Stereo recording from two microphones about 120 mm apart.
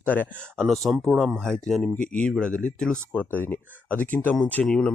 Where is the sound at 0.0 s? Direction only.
15° left (ahead or behind).